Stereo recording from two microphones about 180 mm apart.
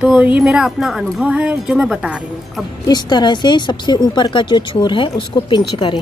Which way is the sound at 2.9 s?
25° left (ahead or behind).